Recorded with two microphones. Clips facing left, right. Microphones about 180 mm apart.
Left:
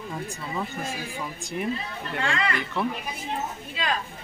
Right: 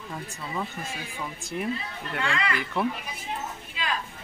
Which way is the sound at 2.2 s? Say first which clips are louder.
Left 2 dB; 40° left (ahead or behind).